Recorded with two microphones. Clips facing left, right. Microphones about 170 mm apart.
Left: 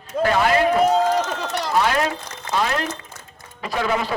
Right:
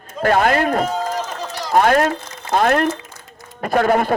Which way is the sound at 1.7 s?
50° right (ahead or behind).